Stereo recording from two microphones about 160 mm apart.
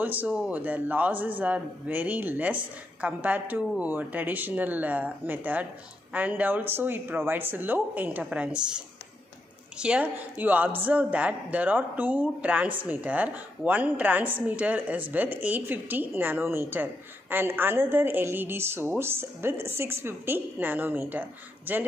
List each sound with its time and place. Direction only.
0.0 s a woman's voice: 10° right (ahead or behind)